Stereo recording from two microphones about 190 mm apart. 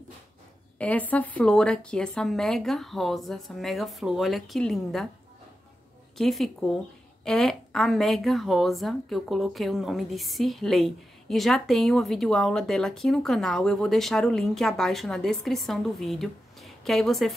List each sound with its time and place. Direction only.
0.7 s a woman's voice: 5° left (ahead or behind)
6.1 s a woman's voice: centre (ahead or behind)